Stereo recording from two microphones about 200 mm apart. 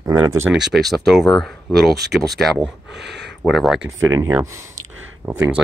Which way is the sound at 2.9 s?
60° right (ahead or behind).